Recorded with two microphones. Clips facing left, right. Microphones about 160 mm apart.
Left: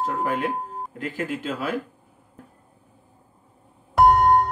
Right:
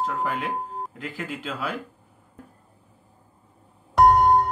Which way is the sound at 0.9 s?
45° left (ahead or behind).